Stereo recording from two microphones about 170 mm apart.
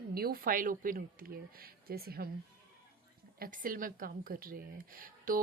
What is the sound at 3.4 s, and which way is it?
Speech, 55° right (ahead or behind).